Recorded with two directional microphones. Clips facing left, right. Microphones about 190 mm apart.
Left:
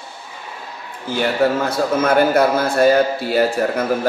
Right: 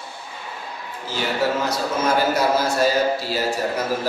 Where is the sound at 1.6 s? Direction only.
55° left (ahead or behind).